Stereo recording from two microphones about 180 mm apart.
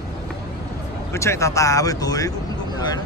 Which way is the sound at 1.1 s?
15° left (ahead or behind).